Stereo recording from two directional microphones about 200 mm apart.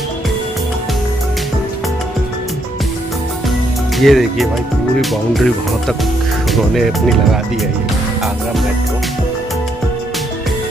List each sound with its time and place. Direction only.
4.0 s speech: centre (ahead or behind)